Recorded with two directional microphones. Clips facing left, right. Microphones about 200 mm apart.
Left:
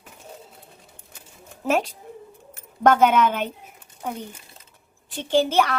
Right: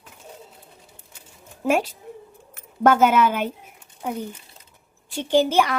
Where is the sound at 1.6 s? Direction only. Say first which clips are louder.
Right 1 dB; 5° right (ahead or behind).